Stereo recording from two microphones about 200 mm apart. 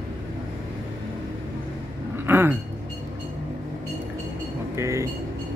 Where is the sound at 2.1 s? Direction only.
10° right (ahead or behind).